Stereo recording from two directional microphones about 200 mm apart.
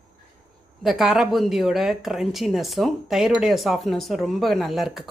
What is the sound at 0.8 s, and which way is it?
Speech, centre (ahead or behind).